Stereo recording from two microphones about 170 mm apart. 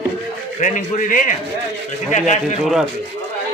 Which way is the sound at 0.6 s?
50° left (ahead or behind).